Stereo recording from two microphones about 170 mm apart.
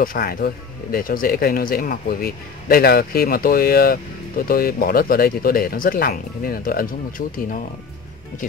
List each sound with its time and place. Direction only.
0.0 s speech: 55° left (ahead or behind)